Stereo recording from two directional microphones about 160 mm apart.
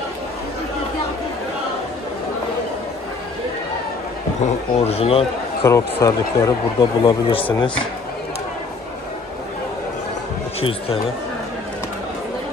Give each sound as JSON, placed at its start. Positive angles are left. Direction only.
{"t": 4.7, "sound": "speech", "side_deg": 40}
{"t": 5.6, "sound": "speech", "side_deg": 20}
{"t": 6.8, "sound": "speech", "side_deg": 30}
{"t": 10.6, "sound": "speech", "side_deg": 35}